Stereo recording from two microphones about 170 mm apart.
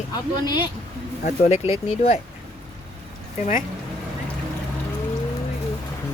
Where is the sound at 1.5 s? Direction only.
35° left (ahead or behind).